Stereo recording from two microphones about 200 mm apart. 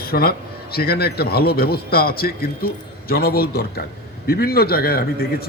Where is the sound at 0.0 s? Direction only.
50° left (ahead or behind).